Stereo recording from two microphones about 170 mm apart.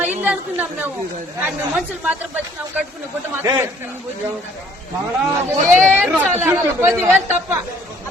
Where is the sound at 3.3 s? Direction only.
15° right (ahead or behind).